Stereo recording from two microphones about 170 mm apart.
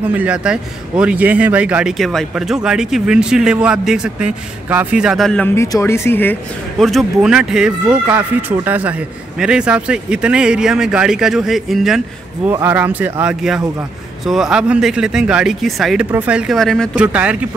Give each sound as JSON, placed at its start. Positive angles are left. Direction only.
{"t": 0.0, "sound": "a man's voice", "side_deg": -10}
{"t": 5.5, "sound": "speech", "side_deg": 15}
{"t": 6.8, "sound": "a man's voice", "side_deg": 0}
{"t": 17.0, "sound": "speech", "side_deg": -10}